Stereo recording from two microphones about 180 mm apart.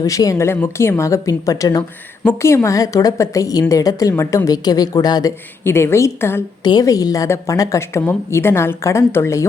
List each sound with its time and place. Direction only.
0.0 s a woman's voice: 20° left (ahead or behind)